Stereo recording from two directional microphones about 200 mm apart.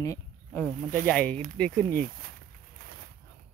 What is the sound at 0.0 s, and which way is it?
Speech, 10° left (ahead or behind).